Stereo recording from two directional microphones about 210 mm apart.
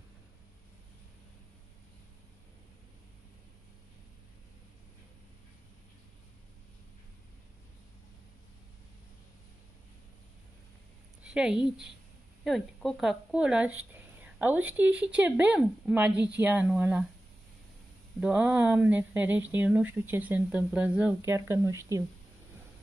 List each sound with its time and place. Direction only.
11.2 s a woman's voice: 5° right (ahead or behind)
18.2 s speech: 5° right (ahead or behind)